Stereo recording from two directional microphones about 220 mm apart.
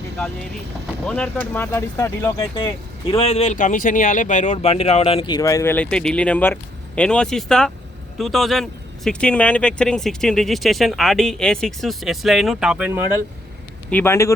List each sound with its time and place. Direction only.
1.0 s speech: 5° left (ahead or behind)
3.1 s speech: 25° left (ahead or behind); by 13.0 s 5° right (ahead or behind)
13.9 s speech: 10° left (ahead or behind)